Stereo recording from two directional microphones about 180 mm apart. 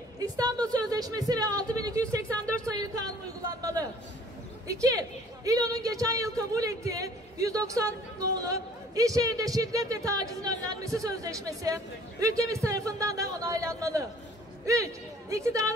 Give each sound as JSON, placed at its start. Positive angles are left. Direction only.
{"t": 0.2, "sound": "a woman's voice", "side_deg": -20}
{"t": 2.2, "sound": "speech", "side_deg": 5}
{"t": 2.6, "sound": "a woman's voice", "side_deg": -20}